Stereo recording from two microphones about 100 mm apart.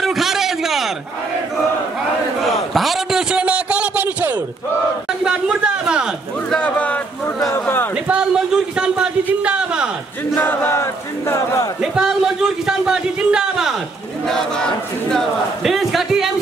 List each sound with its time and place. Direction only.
0.0 s a sound: centre (ahead or behind)
2.4 s a sound: centre (ahead or behind); by 4.4 s 15° right (ahead or behind)
5.2 s speech: 10° right (ahead or behind)
6.5 s a man's voice: 15° left (ahead or behind)
7.5 s battle cry: 20° left (ahead or behind)
7.9 s speech: 10° right (ahead or behind)
10.3 s battle cry: 20° left (ahead or behind)
11.8 s speech: 5° right (ahead or behind)
14.2 s speech: 5° left (ahead or behind)